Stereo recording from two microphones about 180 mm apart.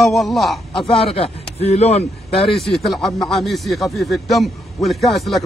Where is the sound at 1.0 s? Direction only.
35° left (ahead or behind).